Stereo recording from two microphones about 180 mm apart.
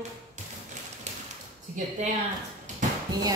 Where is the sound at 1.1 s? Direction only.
40° right (ahead or behind).